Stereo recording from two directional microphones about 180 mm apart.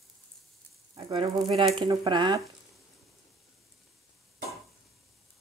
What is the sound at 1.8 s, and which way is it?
Speech, 25° right (ahead or behind).